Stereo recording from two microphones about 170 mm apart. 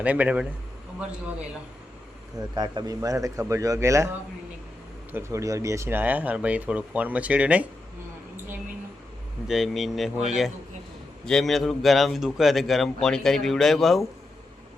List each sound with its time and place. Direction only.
0.0 s speech: 10° right (ahead or behind)
2.6 s speech: 20° right (ahead or behind)
5.1 s speech: 20° right (ahead or behind)
9.5 s speech: centre (ahead or behind)